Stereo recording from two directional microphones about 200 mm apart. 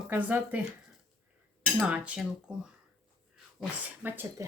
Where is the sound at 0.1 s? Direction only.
10° right (ahead or behind).